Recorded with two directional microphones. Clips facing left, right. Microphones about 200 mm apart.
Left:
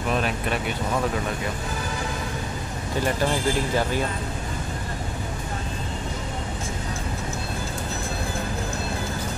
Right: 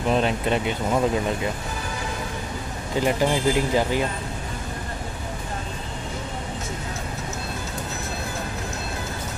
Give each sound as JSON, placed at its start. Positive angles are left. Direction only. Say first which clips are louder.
{"t": 0.1, "sound": "speech", "louder": "right 4 dB", "side_deg": -25}
{"t": 3.0, "sound": "speech", "louder": "right 3 dB", "side_deg": -15}